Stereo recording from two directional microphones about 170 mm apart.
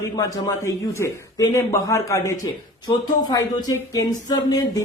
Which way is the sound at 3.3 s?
20° left (ahead or behind).